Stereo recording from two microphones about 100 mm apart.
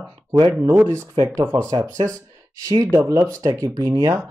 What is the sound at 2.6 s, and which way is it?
Speech, 35° right (ahead or behind).